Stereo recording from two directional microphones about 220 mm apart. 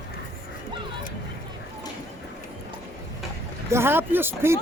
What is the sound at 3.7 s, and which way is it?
Speech, 10° right (ahead or behind).